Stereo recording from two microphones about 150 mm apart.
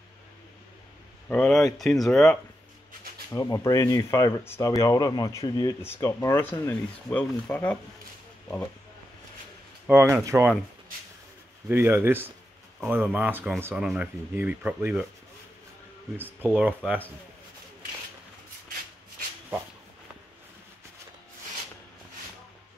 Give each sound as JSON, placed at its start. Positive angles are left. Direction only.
{"t": 1.3, "sound": "speech", "side_deg": 5}
{"t": 3.3, "sound": "speech", "side_deg": 25}
{"t": 9.8, "sound": "speech", "side_deg": -15}
{"t": 11.7, "sound": "speech", "side_deg": -15}
{"t": 16.2, "sound": "speech", "side_deg": -15}